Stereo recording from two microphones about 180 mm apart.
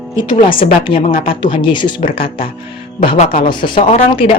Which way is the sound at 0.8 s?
30° left (ahead or behind).